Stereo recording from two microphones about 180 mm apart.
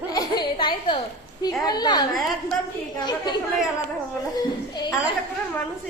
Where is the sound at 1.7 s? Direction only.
25° left (ahead or behind).